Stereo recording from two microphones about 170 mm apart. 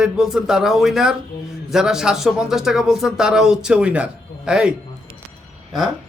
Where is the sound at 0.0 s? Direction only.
5° right (ahead or behind).